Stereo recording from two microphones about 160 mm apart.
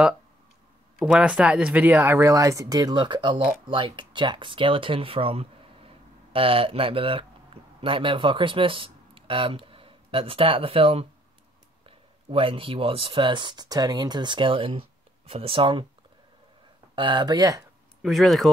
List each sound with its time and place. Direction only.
0.9 s speech: 5° right (ahead or behind); by 15.9 s 35° right (ahead or behind)
16.9 s speech: 30° right (ahead or behind)
18.0 s speech: centre (ahead or behind)